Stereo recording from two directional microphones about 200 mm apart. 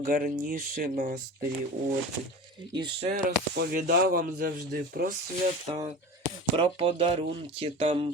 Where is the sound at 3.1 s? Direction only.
40° right (ahead or behind).